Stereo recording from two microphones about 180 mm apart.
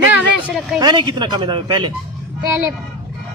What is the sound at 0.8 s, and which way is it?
Speech, 25° right (ahead or behind).